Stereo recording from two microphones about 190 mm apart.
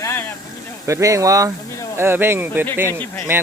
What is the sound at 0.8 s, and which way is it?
Speech, 15° right (ahead or behind).